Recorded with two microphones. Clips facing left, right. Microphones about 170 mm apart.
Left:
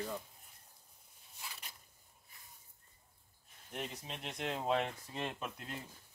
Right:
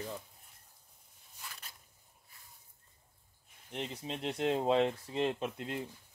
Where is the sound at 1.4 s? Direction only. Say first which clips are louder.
Even; 10° left (ahead or behind).